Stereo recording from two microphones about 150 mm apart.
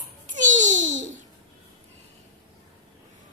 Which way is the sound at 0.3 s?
55° right (ahead or behind).